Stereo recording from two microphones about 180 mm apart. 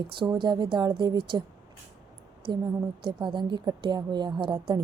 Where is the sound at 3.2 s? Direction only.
25° right (ahead or behind).